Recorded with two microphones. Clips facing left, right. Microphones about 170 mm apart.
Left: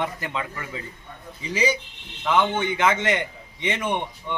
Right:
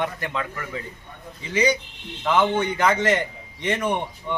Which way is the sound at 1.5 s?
10° left (ahead or behind).